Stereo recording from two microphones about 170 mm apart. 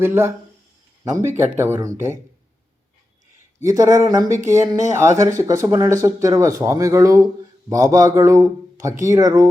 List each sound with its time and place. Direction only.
0.0 s speech: 15° right (ahead or behind)
1.5 s speech: 15° right (ahead or behind)
3.6 s speech: 20° right (ahead or behind)